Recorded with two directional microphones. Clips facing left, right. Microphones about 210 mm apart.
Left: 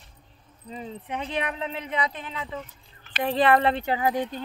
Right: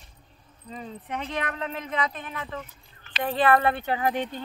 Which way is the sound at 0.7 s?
15° left (ahead or behind).